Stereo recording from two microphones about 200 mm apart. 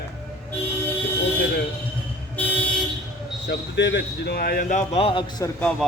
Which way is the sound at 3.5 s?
60° left (ahead or behind).